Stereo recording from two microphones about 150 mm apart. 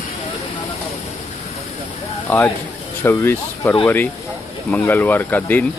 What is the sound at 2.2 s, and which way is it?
Speech, 15° left (ahead or behind).